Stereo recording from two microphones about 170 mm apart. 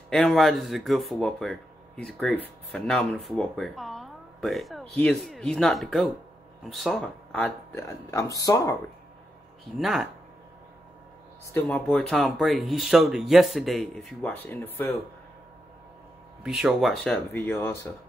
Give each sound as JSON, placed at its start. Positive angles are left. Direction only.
{"t": 0.1, "sound": "speech", "side_deg": 0}
{"t": 9.8, "sound": "speech", "side_deg": 0}
{"t": 11.5, "sound": "speech", "side_deg": 5}
{"t": 16.4, "sound": "speech", "side_deg": -5}
{"t": 17.3, "sound": "speech", "side_deg": 15}